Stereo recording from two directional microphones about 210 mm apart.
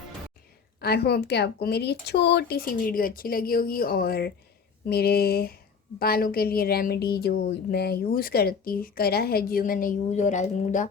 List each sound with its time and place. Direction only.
0.8 s a woman's voice: 50° left (ahead or behind)